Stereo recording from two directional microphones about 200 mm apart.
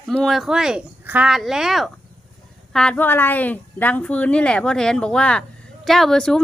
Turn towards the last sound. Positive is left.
turn(degrees=5)  # may be behind; listen again after turning